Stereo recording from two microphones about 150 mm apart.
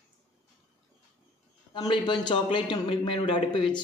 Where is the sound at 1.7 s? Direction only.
30° left (ahead or behind).